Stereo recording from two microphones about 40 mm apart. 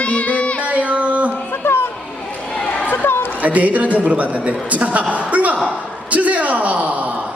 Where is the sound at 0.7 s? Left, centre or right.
Right.